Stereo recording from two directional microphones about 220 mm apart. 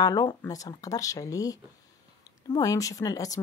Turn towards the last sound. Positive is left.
turn(degrees=15)  # may be behind; listen again after turning